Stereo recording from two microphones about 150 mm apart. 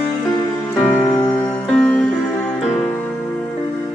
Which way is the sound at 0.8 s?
15° left (ahead or behind).